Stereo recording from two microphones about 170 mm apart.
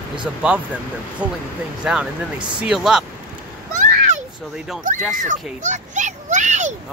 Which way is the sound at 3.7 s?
50° right (ahead or behind).